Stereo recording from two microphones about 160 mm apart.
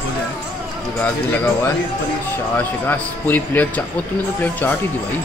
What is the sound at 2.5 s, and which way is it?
A man's voice, 10° left (ahead or behind).